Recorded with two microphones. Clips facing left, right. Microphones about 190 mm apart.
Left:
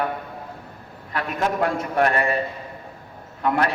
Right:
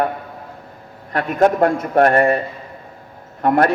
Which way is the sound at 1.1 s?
50° right (ahead or behind).